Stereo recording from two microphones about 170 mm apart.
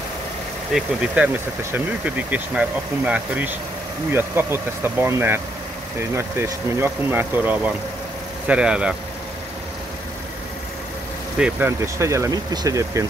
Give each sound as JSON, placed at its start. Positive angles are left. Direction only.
{"t": 0.7, "sound": "speech", "side_deg": -10}
{"t": 11.3, "sound": "speech", "side_deg": -10}